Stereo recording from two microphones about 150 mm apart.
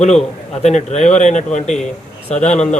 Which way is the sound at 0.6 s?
50° left (ahead or behind).